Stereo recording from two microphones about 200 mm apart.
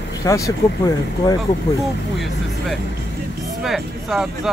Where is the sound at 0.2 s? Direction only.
15° left (ahead or behind).